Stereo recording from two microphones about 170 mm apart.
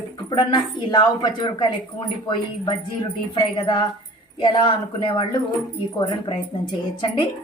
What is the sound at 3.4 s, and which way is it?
Speech, 25° left (ahead or behind).